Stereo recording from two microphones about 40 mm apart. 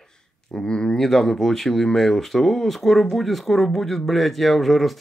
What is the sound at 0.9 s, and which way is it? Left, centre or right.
Speech, centre.